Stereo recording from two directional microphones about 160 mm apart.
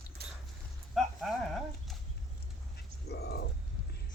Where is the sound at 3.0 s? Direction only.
90° left.